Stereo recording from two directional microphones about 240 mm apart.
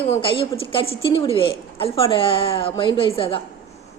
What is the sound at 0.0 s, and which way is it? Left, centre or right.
A woman's voice, left.